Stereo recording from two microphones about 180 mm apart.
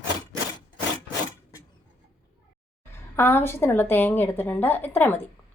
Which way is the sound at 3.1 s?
10° left (ahead or behind).